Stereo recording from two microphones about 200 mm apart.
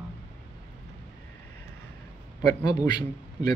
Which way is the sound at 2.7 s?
20° left (ahead or behind).